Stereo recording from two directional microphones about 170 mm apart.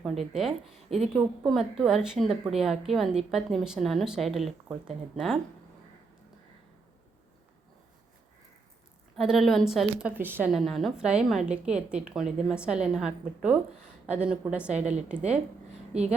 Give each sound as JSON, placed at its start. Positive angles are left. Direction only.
{"t": 0.2, "sound": "a woman's voice", "side_deg": 0}
{"t": 9.1, "sound": "a woman's voice", "side_deg": 0}
{"t": 10.5, "sound": "a woman's voice", "side_deg": 0}
{"t": 14.7, "sound": "a woman's voice", "side_deg": -40}